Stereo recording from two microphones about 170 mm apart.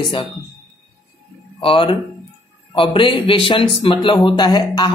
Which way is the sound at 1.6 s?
30° left (ahead or behind).